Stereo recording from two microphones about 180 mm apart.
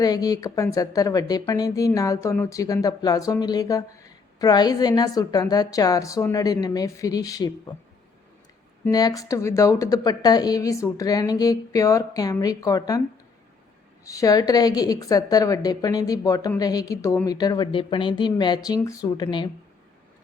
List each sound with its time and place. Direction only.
0.0 s speech: 20° left (ahead or behind)
8.9 s speech: 20° left (ahead or behind)
14.0 s speech: 20° left (ahead or behind)